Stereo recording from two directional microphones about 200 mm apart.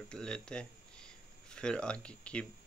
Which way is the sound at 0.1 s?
5° left (ahead or behind).